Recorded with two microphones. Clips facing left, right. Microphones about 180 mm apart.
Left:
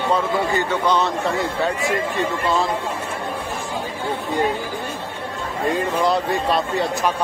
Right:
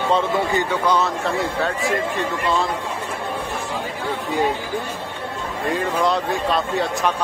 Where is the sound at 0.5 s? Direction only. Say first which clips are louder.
Even; 10° right (ahead or behind).